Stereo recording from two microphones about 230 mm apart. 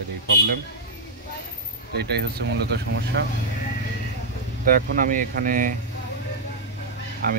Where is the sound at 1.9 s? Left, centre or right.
Right.